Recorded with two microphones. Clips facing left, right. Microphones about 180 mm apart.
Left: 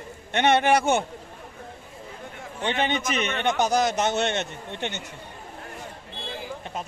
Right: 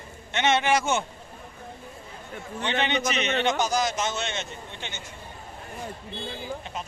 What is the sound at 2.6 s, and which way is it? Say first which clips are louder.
A man's voice: left 1 dB; 45° left (ahead or behind).